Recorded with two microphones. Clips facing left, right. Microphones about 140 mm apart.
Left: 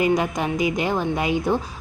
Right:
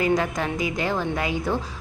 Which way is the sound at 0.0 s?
15° left (ahead or behind).